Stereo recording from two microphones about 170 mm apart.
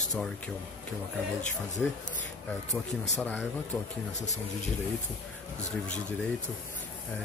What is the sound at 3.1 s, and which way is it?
Speech, 10° left (ahead or behind).